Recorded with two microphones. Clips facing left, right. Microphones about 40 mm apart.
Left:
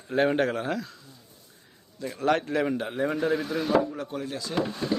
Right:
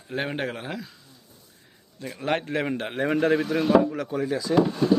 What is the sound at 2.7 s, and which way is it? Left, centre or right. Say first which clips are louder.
Speech: right 2 dB; right.